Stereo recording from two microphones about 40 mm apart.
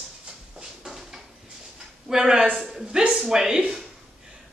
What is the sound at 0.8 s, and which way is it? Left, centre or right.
Drawer open or close, centre.